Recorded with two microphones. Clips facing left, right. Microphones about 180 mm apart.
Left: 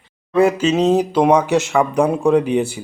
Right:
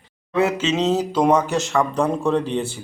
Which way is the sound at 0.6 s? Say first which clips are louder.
Left 5 dB; 10° left (ahead or behind).